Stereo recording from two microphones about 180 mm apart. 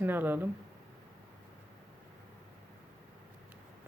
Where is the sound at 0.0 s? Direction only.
10° right (ahead or behind).